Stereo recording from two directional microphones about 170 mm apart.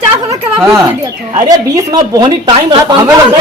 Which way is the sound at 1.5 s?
20° right (ahead or behind).